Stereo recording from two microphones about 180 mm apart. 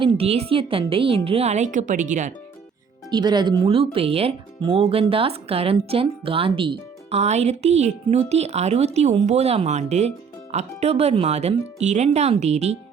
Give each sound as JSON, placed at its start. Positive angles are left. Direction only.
{"t": 0.0, "sound": "speech", "side_deg": -30}
{"t": 3.1, "sound": "speech", "side_deg": -25}